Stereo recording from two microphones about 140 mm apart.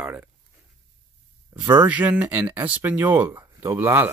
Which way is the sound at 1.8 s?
10° right (ahead or behind).